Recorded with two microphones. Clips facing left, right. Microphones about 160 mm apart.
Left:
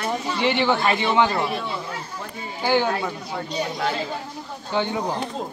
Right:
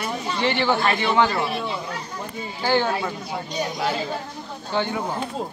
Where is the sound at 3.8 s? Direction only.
5° right (ahead or behind).